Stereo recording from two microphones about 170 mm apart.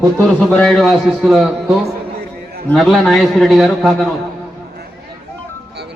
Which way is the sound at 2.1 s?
65° right (ahead or behind).